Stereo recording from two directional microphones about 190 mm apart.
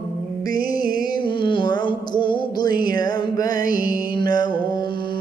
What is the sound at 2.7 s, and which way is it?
Music, 50° right (ahead or behind).